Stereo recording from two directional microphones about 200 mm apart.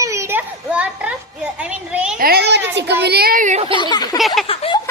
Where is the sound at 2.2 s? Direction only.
55° right (ahead or behind).